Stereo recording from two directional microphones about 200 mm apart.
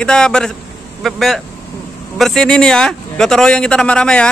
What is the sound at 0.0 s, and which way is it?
A man's voice, 5° left (ahead or behind).